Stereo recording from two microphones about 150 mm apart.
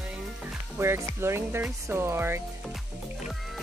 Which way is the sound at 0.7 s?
15° right (ahead or behind).